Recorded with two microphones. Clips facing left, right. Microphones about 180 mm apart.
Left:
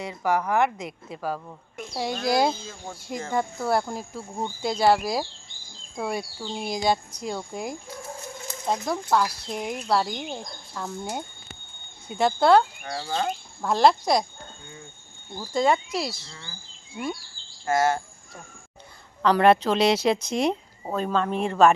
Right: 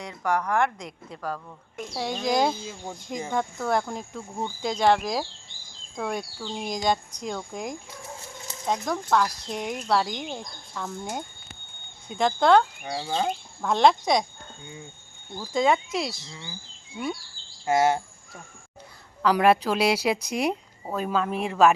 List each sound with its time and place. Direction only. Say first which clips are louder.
0.0 s speech: left 2 dB; 5° left (ahead or behind)
2.6 s a woman's voice: right 2 dB; 15° right (ahead or behind)
3.3 s speech: left 1 dB; 5° left (ahead or behind)
12.0 s speech: left 1 dB; 5° left (ahead or behind)
12.8 s a woman's voice: right 1 dB; 15° right (ahead or behind)
13.6 s speech: left 1 dB; 5° left (ahead or behind)
15.4 s speech: even; centre (ahead or behind)
16.2 s a woman's voice: right 3 dB; 15° right (ahead or behind)
17.7 s a woman's voice: right 1 dB; 15° right (ahead or behind)
19.2 s a woman's voice: left 2 dB; 5° right (ahead or behind)